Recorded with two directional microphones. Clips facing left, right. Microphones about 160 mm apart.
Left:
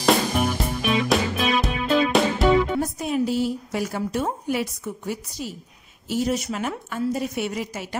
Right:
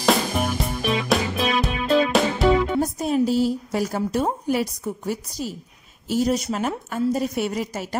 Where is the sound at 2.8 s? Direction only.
35° right (ahead or behind).